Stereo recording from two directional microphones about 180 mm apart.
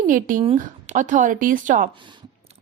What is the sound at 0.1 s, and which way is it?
A woman's voice, 50° right (ahead or behind).